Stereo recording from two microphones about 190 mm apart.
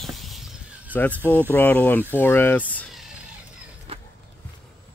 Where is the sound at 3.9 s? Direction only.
30° right (ahead or behind).